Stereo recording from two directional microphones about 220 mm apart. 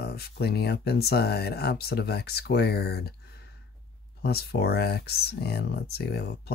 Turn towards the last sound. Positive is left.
turn(degrees=50)  # may be behind; listen again after turning